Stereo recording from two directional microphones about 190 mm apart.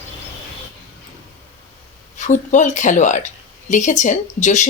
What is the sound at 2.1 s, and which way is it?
A woman's voice, 40° left (ahead or behind).